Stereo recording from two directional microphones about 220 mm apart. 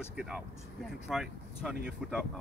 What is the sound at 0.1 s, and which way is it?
Speech, centre (ahead or behind).